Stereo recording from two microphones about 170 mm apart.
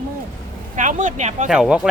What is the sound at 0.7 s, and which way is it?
Speech, 45° right (ahead or behind).